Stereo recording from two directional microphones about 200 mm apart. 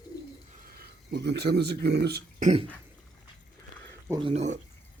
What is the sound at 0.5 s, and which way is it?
A man's voice, 45° right (ahead or behind).